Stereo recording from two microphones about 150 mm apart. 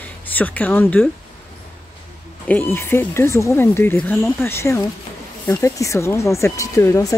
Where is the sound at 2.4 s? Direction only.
15° left (ahead or behind).